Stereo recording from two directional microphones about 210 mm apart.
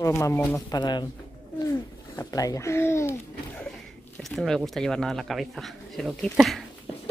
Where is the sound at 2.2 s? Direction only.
15° left (ahead or behind).